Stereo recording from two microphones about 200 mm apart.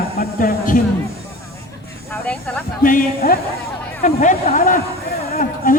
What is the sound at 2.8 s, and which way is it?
A woman's voice, 45° left (ahead or behind).